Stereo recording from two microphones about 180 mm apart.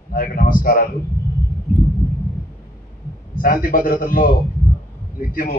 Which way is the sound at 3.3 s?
50° left (ahead or behind).